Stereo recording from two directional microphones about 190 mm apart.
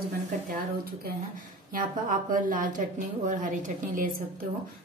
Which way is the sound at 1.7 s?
45° right (ahead or behind).